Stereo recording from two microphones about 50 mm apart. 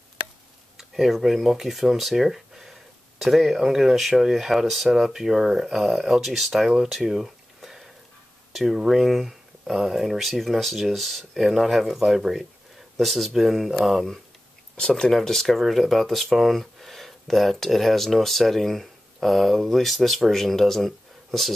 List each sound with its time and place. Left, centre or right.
0.7 s speech: centre
7.1 s a sound: centre
8.5 s speech: centre
14.8 s speech: centre
15.1 s speech: centre